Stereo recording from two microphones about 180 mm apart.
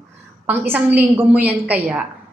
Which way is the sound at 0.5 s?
10° right (ahead or behind).